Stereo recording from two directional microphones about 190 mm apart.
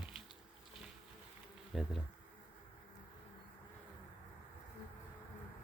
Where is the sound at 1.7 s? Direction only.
5° right (ahead or behind).